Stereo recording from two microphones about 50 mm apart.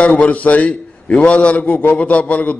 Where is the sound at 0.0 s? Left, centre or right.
Left.